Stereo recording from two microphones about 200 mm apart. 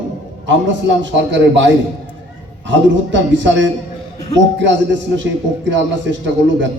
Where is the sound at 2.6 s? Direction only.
65° right (ahead or behind).